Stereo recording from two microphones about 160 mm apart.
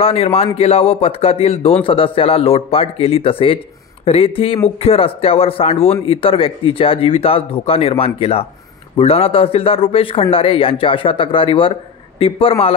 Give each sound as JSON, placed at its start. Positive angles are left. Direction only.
{"t": 0.0, "sound": "a man's voice", "side_deg": 40}